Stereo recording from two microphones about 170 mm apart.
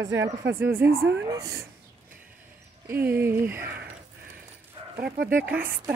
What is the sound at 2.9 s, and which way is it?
Speech, 10° right (ahead or behind).